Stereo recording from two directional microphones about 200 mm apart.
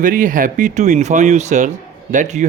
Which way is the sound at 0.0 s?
40° right (ahead or behind).